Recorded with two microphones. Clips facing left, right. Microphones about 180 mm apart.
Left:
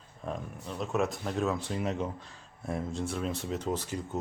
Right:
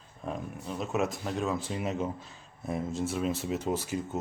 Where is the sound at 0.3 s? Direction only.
5° right (ahead or behind).